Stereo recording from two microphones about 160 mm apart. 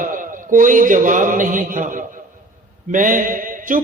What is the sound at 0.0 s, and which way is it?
A man's voice, 55° right (ahead or behind).